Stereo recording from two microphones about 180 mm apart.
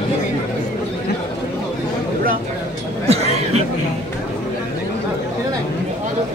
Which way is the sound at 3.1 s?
35° right (ahead or behind).